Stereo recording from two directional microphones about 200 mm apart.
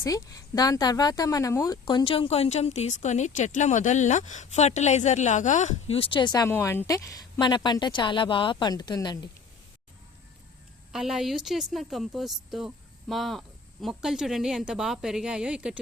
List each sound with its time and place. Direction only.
0.0 s speech: 15° left (ahead or behind)
10.9 s a woman's voice: centre (ahead or behind)